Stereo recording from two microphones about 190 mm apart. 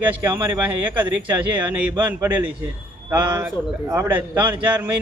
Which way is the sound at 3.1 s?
20° right (ahead or behind).